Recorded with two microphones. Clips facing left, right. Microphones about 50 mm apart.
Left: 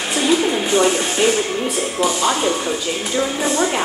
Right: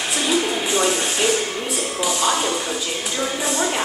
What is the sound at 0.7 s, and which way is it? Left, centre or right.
Speech, centre.